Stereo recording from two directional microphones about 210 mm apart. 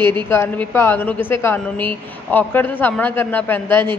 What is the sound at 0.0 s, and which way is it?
A woman's voice, 10° left (ahead or behind).